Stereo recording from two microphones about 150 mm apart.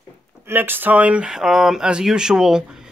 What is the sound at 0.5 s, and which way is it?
Speech, 15° right (ahead or behind).